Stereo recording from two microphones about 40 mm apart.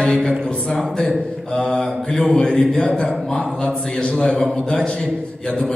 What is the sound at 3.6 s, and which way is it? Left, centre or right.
Speech, left.